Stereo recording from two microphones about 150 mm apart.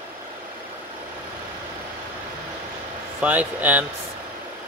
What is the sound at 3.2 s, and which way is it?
Speech, 10° right (ahead or behind).